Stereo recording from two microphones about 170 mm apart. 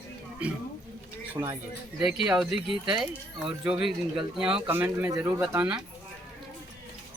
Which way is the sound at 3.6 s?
5° right (ahead or behind).